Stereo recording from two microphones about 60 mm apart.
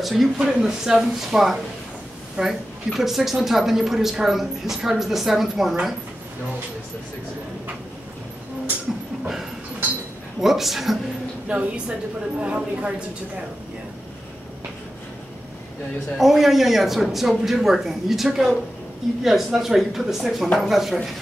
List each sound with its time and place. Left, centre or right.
0.0 s speech: centre
10.4 s speech: centre
11.4 s speech: centre
16.2 s speech: centre